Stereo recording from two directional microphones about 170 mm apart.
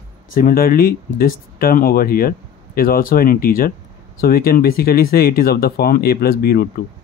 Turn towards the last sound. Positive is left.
turn(degrees=60)  # may be behind; listen again after turning